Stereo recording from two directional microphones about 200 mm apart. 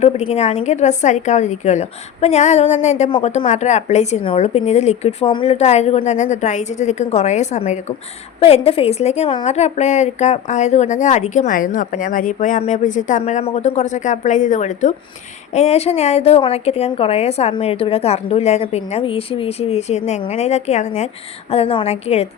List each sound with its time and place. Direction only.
0.0 s a woman's voice: 35° left (ahead or behind)